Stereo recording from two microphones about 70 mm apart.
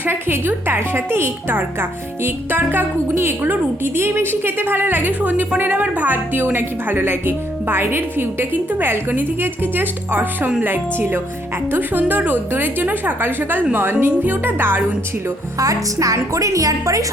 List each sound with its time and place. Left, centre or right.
0.0 s a woman's voice: right
15.5 s a woman's voice: right